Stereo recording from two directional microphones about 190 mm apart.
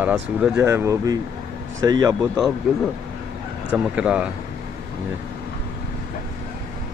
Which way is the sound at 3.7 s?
5° right (ahead or behind).